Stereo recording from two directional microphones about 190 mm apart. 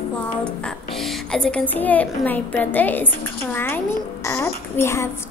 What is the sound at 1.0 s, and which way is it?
A woman's voice, 5° left (ahead or behind).